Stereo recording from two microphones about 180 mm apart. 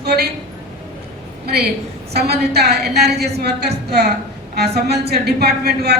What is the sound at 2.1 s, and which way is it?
A man's voice, 65° right (ahead or behind).